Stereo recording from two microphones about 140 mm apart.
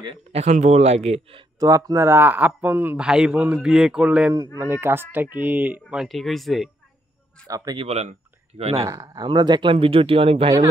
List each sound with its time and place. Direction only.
0.3 s speech: 55° right (ahead or behind)
1.6 s speech: 25° right (ahead or behind)
6.0 s speech: centre (ahead or behind)
7.4 s speech: 25° right (ahead or behind)
7.8 s speech: 50° right (ahead or behind)
8.8 s speech: 25° right (ahead or behind); by 10.5 s 40° right (ahead or behind)